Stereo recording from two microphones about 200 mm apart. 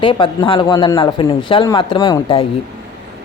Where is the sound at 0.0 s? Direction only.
25° left (ahead or behind).